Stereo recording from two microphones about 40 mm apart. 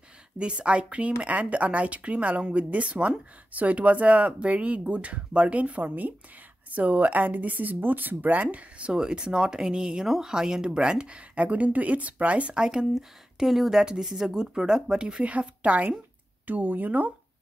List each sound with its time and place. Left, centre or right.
0.4 s speech: right
8.9 s speech: right
12.5 s speech: right
12.9 s speech: centre
15.2 s speech: right
16.4 s speech: right